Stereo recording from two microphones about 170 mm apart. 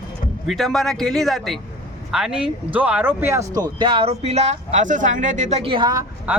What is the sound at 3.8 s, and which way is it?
Speech, 30° right (ahead or behind).